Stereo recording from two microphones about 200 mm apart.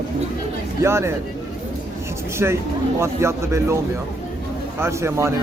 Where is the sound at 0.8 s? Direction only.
15° right (ahead or behind).